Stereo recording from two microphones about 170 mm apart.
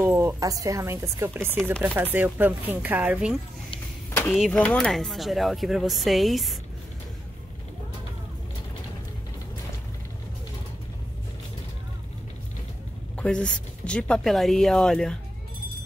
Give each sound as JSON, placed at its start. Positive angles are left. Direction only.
{"t": 0.0, "sound": "speech", "side_deg": -15}
{"t": 4.1, "sound": "vehicle", "side_deg": 10}
{"t": 4.4, "sound": "speech", "side_deg": 5}
{"t": 13.1, "sound": "speech", "side_deg": 5}